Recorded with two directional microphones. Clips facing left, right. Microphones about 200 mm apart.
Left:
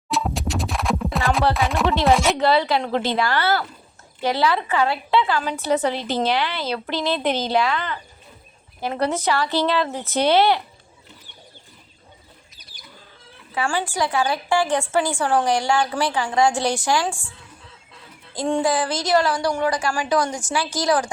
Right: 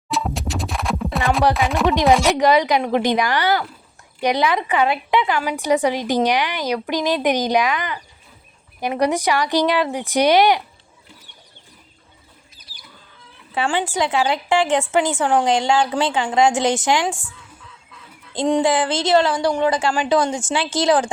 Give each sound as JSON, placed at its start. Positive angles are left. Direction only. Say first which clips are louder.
{"t": 0.1, "sound": "music", "louder": "even", "side_deg": 0}
{"t": 1.5, "sound": "speech", "louder": "right 2 dB", "side_deg": 0}
{"t": 1.9, "sound": "a woman's voice", "louder": "right 3 dB", "side_deg": -15}
{"t": 13.6, "sound": "a woman's voice", "louder": "right 2 dB", "side_deg": -25}
{"t": 18.3, "sound": "a woman's voice", "louder": "right 3 dB", "side_deg": -20}